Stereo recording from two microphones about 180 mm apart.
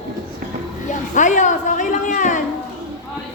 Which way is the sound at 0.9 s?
45° left (ahead or behind).